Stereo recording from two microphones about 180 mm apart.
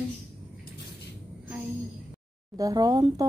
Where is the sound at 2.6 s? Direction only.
20° right (ahead or behind).